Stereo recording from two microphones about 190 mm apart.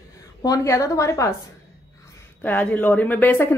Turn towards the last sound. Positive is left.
turn(degrees=10)  # may be behind; listen again after turning